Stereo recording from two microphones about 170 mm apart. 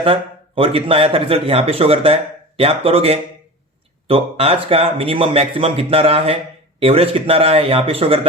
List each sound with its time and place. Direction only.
0.0 s a man's voice: 30° right (ahead or behind)